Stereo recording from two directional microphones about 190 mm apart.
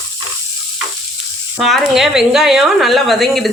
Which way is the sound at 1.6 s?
Centre (ahead or behind).